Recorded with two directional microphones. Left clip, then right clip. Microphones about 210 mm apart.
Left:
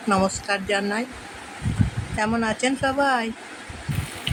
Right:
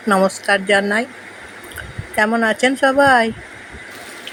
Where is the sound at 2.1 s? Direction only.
15° right (ahead or behind).